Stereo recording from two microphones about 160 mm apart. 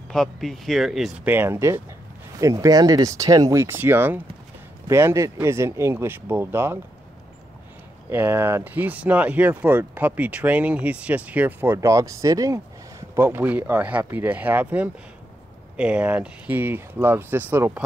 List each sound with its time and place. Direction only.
0.1 s speech: centre (ahead or behind)
1.3 s speech: 15° right (ahead or behind)
8.1 s speech: 15° right (ahead or behind)